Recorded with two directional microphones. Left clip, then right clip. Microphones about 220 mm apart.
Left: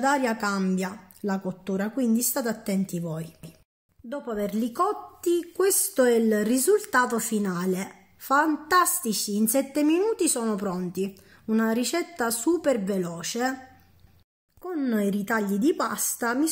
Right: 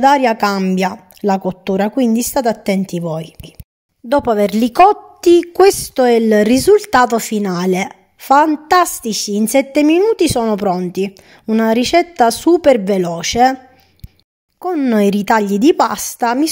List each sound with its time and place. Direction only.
0.0 s a woman's voice: 35° right (ahead or behind)
4.1 s a woman's voice: 45° right (ahead or behind)
14.6 s a woman's voice: 40° right (ahead or behind)